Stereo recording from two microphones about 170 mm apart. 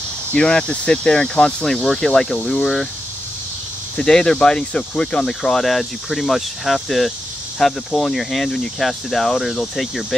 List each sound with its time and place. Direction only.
0.3 s speech: 5° left (ahead or behind)
3.9 s speech: 5° left (ahead or behind)